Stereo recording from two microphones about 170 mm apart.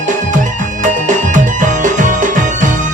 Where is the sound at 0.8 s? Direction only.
50° right (ahead or behind).